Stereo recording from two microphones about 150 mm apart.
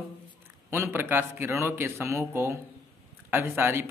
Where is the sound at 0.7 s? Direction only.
15° right (ahead or behind).